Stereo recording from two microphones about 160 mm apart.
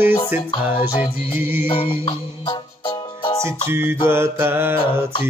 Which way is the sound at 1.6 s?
35° left (ahead or behind).